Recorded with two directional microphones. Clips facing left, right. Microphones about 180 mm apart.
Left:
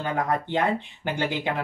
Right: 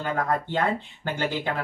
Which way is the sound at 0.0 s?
15° left (ahead or behind).